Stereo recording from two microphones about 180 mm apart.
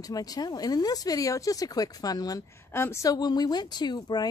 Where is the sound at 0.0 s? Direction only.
20° left (ahead or behind).